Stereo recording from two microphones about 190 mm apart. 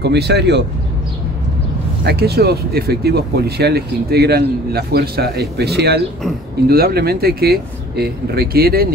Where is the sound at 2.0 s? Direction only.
60° right (ahead or behind).